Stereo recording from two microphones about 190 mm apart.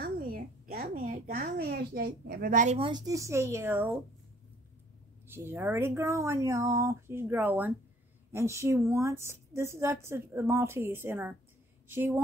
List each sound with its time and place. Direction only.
0.0 s speech: 50° right (ahead or behind)
2.8 s a woman's voice: 20° right (ahead or behind)
5.3 s a woman's voice: 10° right (ahead or behind)